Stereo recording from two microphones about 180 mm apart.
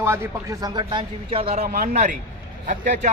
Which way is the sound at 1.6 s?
50° right (ahead or behind).